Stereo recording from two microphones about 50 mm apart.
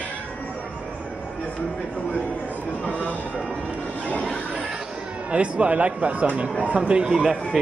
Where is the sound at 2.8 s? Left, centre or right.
Left.